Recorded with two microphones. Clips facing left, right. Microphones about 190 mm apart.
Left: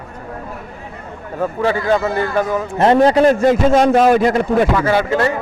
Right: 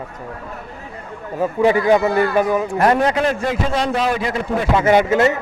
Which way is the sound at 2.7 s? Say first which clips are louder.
Left 4 dB; 25° left (ahead or behind).